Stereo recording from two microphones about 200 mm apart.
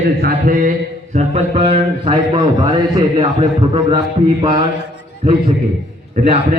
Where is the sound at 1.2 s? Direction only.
30° right (ahead or behind).